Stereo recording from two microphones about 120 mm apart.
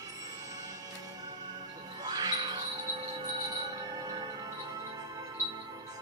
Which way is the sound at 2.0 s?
35° right (ahead or behind).